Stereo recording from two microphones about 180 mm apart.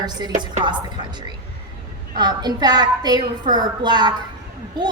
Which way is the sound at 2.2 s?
25° right (ahead or behind).